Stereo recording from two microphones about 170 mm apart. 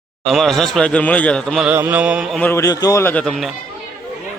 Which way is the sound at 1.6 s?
10° right (ahead or behind).